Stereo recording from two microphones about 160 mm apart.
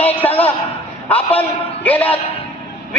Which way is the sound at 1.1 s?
10° left (ahead or behind).